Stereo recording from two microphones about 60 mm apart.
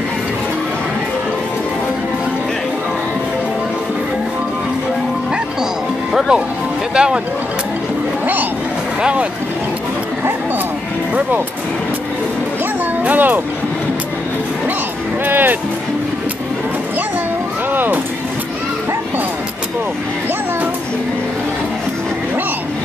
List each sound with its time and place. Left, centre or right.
6.1 s music: centre
7.0 s a sound: centre
9.0 s speech: right
13.0 s speech: right
15.2 s music: right
17.7 s music: right